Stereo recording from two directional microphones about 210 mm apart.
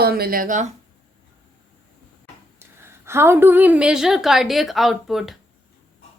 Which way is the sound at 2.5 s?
10° right (ahead or behind).